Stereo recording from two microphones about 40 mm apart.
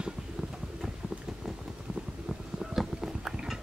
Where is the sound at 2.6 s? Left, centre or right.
Centre.